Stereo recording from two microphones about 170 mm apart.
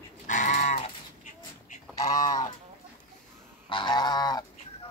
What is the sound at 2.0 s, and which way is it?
Goose, 20° left (ahead or behind).